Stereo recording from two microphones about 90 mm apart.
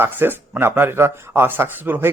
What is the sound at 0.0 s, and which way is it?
Speech, 25° right (ahead or behind).